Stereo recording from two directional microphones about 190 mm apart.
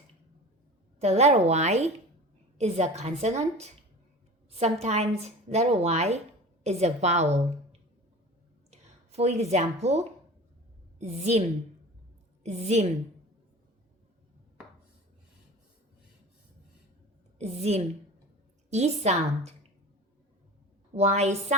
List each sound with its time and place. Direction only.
0.9 s a woman's voice: 35° right (ahead or behind)
17.3 s a woman's voice: 35° right (ahead or behind)
20.9 s a woman's voice: 35° right (ahead or behind)